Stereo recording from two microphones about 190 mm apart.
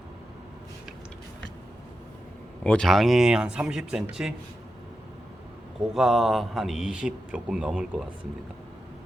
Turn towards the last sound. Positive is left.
turn(degrees=-5)  # may be behind; listen again after turning